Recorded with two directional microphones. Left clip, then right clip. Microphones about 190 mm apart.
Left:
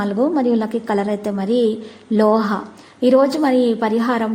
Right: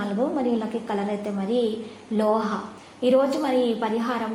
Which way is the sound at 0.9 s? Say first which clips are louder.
Left 7 dB; 40° left (ahead or behind).